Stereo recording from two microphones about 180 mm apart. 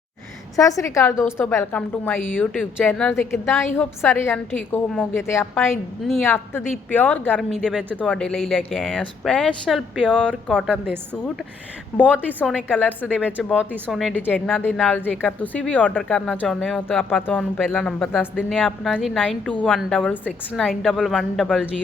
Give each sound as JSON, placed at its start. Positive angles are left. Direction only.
{"t": 0.5, "sound": "a woman's voice", "side_deg": 20}
{"t": 7.5, "sound": "speech", "side_deg": 0}
{"t": 12.0, "sound": "a woman's voice", "side_deg": -10}
{"t": 12.7, "sound": "a woman's voice", "side_deg": 5}
{"t": 13.1, "sound": "a woman's voice", "side_deg": -5}